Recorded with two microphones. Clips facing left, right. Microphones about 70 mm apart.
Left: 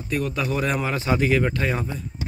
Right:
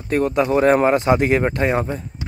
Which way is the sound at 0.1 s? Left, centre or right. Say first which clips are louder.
Right 8 dB; right.